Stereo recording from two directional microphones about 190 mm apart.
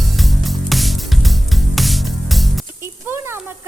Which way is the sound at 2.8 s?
15° right (ahead or behind).